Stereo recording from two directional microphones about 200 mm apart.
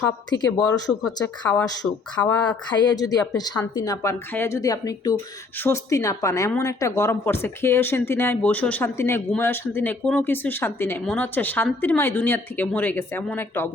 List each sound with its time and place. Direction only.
0.3 s a woman's voice: 20° left (ahead or behind)